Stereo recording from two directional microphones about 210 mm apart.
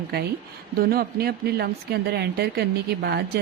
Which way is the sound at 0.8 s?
45° right (ahead or behind).